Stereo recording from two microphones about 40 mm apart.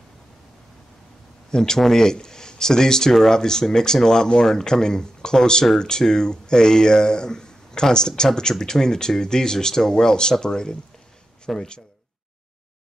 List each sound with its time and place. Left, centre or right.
1.5 s speech: centre